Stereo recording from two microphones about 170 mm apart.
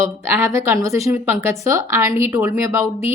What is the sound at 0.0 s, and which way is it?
A woman's voice, 15° right (ahead or behind).